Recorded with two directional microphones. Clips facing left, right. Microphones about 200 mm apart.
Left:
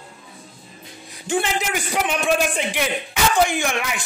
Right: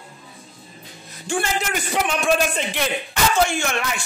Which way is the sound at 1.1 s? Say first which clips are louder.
Left 2 dB; 15° left (ahead or behind).